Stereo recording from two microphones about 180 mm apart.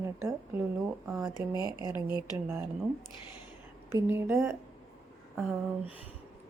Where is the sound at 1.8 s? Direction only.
10° right (ahead or behind).